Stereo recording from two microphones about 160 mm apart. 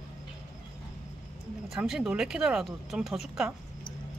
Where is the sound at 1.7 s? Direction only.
Centre (ahead or behind).